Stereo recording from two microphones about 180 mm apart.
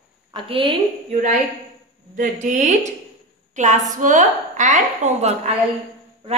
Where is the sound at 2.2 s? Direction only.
45° right (ahead or behind).